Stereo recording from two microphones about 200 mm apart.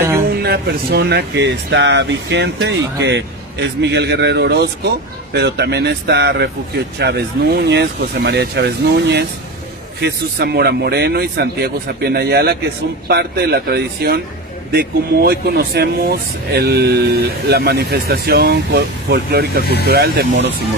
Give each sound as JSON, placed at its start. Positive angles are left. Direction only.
{"t": 0.4, "sound": "speech", "side_deg": -50}